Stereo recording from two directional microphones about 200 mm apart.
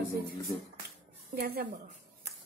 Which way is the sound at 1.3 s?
50° right (ahead or behind).